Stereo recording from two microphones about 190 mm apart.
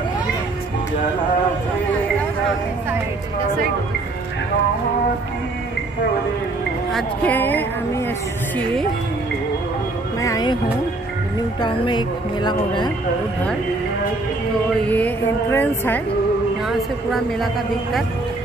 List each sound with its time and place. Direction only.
6.9 s a woman's voice: 5° left (ahead or behind)
10.2 s speech: 20° left (ahead or behind)
11.6 s speech: 25° left (ahead or behind)
14.9 s a woman's voice: 10° left (ahead or behind)
16.6 s a woman's voice: centre (ahead or behind)